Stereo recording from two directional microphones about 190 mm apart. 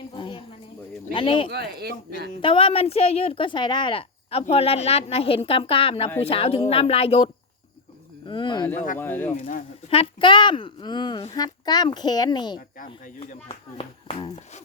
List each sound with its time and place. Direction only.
0.2 s snake: 25° left (ahead or behind)
1.1 s speech: 25° left (ahead or behind)
1.5 s speech: 60° right (ahead or behind)
2.4 s speech: 25° left (ahead or behind)
8.3 s speech: 25° left (ahead or behind)
8.7 s speech: 45° left (ahead or behind)
9.0 s speech: 10° left (ahead or behind)
9.3 s speech: 40° left (ahead or behind)
9.9 s speech: 30° left (ahead or behind)
12.5 s speech: 45° left (ahead or behind)
13.7 s speech: 30° left (ahead or behind)